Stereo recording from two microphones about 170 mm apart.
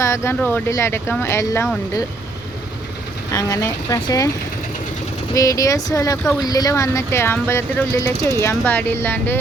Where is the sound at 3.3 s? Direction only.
20° left (ahead or behind).